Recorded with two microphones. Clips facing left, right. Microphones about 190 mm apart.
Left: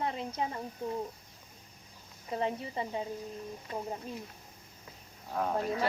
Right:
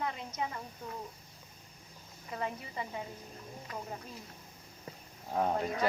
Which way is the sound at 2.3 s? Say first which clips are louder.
Left 5 dB; 30° left (ahead or behind).